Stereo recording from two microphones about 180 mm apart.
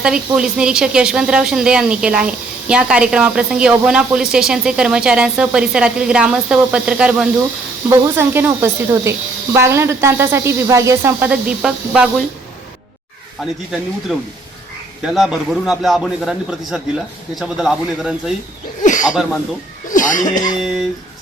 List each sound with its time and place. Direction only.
0.0 s a woman's voice: 5° right (ahead or behind)
13.4 s a woman's voice: centre (ahead or behind)
18.8 s a sound: 45° left (ahead or behind)
19.9 s speech: 45° left (ahead or behind)